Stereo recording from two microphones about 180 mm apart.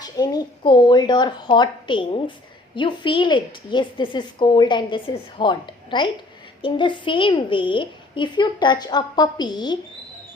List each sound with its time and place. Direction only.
0.0 s a woman's voice: 20° left (ahead or behind)